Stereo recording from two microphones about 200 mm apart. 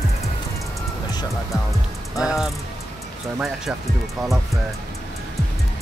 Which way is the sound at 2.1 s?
Centre (ahead or behind).